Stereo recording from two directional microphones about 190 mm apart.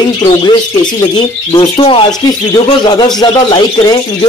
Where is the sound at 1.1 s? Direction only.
25° left (ahead or behind).